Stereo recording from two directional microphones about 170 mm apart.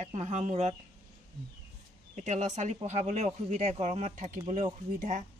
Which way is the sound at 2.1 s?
45° right (ahead or behind).